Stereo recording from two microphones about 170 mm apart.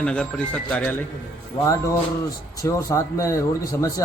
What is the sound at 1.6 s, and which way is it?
Speech, 20° left (ahead or behind).